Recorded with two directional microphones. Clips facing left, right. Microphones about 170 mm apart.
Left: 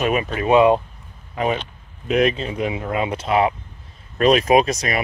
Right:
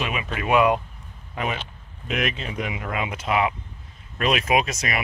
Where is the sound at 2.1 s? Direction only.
35° left (ahead or behind).